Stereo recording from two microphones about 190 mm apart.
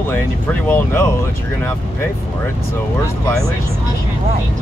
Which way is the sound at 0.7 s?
10° left (ahead or behind).